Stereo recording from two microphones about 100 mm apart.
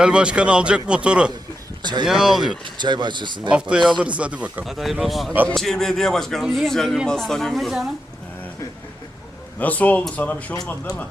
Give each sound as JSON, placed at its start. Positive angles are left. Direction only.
{"t": 0.0, "sound": "a man's voice", "side_deg": -10}
{"t": 1.8, "sound": "speech", "side_deg": -50}
{"t": 2.0, "sound": "a man's voice", "side_deg": -5}
{"t": 2.6, "sound": "speech", "side_deg": -50}
{"t": 3.5, "sound": "a man's voice", "side_deg": -5}
{"t": 4.6, "sound": "a man's voice", "side_deg": 0}
{"t": 9.6, "sound": "speech", "side_deg": 15}